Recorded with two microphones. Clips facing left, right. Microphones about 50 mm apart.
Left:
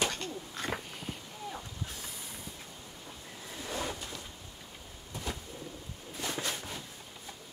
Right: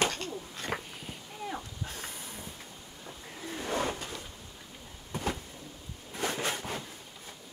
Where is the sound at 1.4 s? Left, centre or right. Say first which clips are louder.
Right 4 dB; right.